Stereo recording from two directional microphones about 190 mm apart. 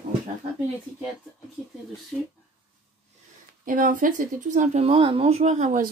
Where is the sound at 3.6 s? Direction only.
45° right (ahead or behind).